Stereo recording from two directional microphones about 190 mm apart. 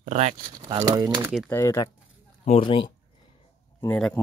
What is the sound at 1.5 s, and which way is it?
Speech, 15° left (ahead or behind).